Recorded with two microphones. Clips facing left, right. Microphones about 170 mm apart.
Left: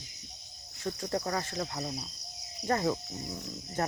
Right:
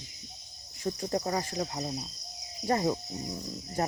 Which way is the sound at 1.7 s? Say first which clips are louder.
Right 2 dB; 25° right (ahead or behind).